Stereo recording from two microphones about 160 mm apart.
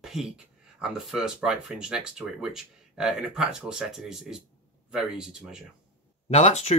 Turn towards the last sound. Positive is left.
turn(degrees=40)  # may be behind; listen again after turning